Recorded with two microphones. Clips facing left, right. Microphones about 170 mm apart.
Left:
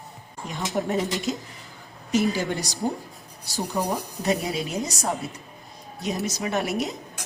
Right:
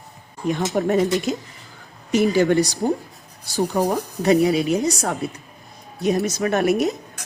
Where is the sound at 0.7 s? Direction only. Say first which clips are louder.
Right 3 dB; 55° right (ahead or behind).